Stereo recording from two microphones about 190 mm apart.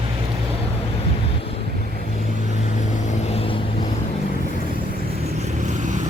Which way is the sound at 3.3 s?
30° left (ahead or behind).